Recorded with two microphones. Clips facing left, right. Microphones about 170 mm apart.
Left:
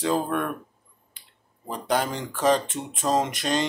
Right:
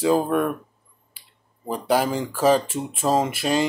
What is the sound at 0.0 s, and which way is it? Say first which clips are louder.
Speech: right 5 dB; 10° right (ahead or behind).